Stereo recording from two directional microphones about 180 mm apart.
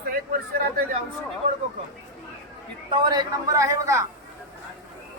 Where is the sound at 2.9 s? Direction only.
25° right (ahead or behind).